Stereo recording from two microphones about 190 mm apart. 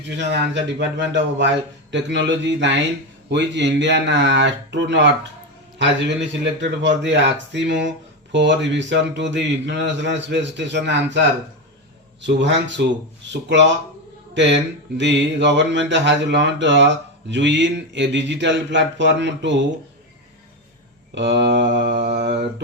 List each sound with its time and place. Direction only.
0.1 s a man's voice: 65° right (ahead or behind)
12.2 s a man's voice: 70° right (ahead or behind)
21.2 s mantra: 65° right (ahead or behind)